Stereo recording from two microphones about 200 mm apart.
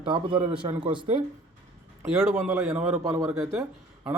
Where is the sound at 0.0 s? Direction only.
25° right (ahead or behind).